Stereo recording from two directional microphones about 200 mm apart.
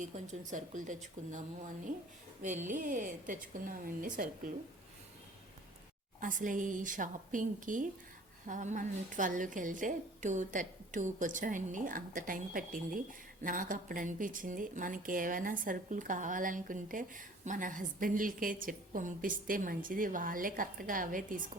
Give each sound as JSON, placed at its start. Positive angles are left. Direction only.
{"t": 0.0, "sound": "a woman's voice", "side_deg": -40}
{"t": 2.6, "sound": "a woman's voice", "side_deg": -40}
{"t": 6.1, "sound": "a woman's voice", "side_deg": -40}